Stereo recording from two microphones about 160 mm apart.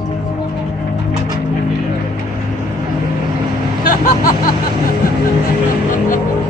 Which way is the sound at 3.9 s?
60° left (ahead or behind).